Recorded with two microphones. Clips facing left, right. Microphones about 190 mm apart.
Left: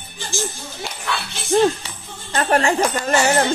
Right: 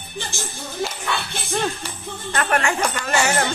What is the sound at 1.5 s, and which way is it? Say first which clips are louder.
Speech: left 9 dB; 35° left (ahead or behind).